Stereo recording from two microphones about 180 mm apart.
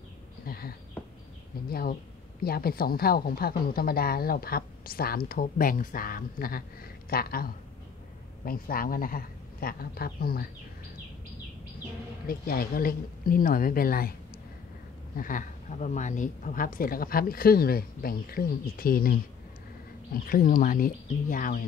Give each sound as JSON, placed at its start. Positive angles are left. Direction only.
{"t": 0.5, "sound": "a sound", "side_deg": 55}
{"t": 1.7, "sound": "a woman's voice", "side_deg": 55}
{"t": 12.3, "sound": "speech", "side_deg": 55}
{"t": 20.2, "sound": "speech", "side_deg": 50}